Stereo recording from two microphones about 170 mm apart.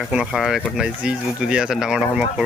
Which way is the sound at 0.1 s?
5° right (ahead or behind).